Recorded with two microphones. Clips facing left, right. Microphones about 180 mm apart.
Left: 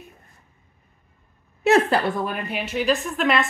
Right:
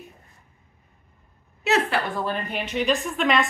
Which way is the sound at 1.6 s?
50° left (ahead or behind).